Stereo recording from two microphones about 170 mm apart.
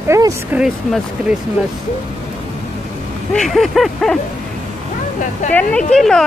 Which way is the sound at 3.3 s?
Centre (ahead or behind).